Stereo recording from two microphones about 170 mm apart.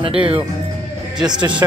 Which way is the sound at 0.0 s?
30° right (ahead or behind).